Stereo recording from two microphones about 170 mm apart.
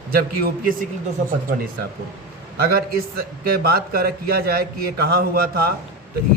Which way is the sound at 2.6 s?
60° right (ahead or behind).